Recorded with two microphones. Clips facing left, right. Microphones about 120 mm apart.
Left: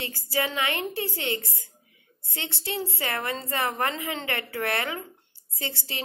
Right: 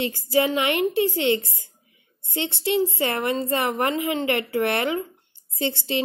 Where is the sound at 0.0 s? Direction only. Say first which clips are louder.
Right 8 dB; 20° right (ahead or behind).